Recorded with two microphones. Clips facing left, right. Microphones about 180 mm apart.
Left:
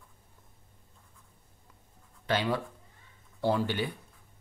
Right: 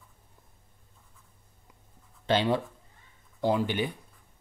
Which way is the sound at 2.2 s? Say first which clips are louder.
Right 4 dB; 25° right (ahead or behind).